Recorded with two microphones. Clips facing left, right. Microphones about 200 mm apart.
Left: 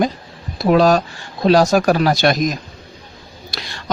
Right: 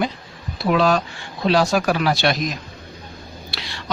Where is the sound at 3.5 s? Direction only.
45° left (ahead or behind).